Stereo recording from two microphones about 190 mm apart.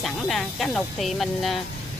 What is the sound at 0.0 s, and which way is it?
Speech, centre (ahead or behind).